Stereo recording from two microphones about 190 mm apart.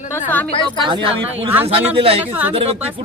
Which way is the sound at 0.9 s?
25° right (ahead or behind).